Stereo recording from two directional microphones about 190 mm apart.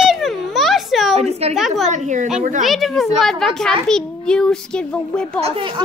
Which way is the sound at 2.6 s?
Centre (ahead or behind).